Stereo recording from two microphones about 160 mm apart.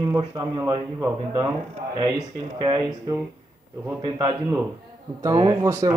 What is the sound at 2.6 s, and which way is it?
Speech, 25° right (ahead or behind).